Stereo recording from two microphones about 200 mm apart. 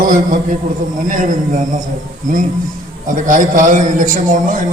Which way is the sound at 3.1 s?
40° right (ahead or behind).